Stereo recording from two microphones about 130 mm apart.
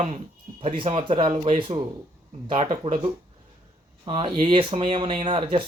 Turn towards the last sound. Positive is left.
turn(degrees=-40)  # may be behind; listen again after turning